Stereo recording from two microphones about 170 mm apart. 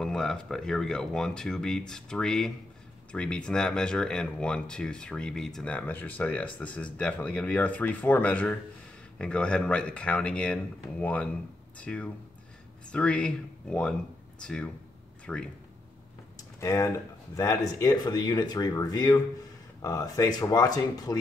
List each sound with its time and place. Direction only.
0.0 s speech: 5° left (ahead or behind)
16.5 s speech: 20° left (ahead or behind)